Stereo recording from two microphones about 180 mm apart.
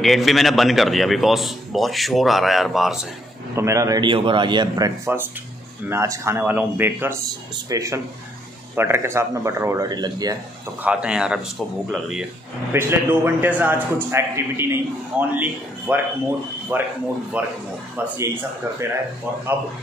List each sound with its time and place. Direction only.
0.0 s a man's voice: centre (ahead or behind)
3.5 s a man's voice: 15° right (ahead or behind)
10.8 s a man's voice: 5° right (ahead or behind)